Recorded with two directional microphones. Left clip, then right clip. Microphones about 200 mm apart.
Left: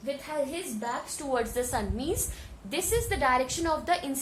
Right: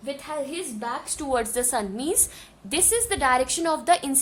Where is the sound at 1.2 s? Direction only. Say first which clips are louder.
Right 4 dB; 50° right (ahead or behind).